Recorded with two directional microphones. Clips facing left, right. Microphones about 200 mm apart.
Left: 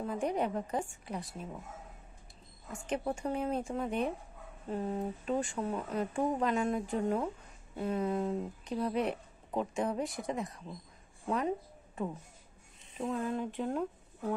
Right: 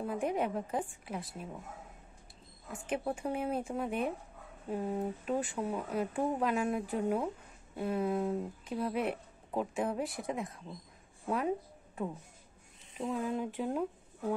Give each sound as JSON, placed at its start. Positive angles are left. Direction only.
{"t": 0.0, "sound": "speech", "side_deg": -5}
{"t": 2.7, "sound": "speech", "side_deg": 0}